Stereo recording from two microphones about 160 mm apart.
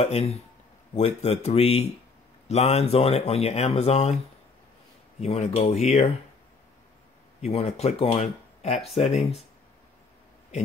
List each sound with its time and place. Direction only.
0.0 s speech: 40° left (ahead or behind)
5.2 s speech: 40° left (ahead or behind)
7.4 s speech: 40° left (ahead or behind)